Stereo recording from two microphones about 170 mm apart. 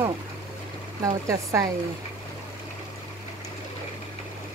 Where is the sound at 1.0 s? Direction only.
15° right (ahead or behind).